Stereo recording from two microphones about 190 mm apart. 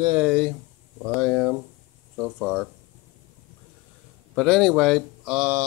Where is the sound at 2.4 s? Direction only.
5° right (ahead or behind).